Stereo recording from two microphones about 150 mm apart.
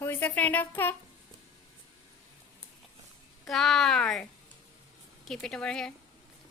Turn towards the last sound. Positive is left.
turn(degrees=5)  # may be behind; listen again after turning